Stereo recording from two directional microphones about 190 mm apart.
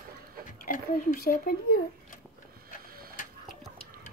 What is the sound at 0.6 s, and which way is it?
Speech, 45° left (ahead or behind).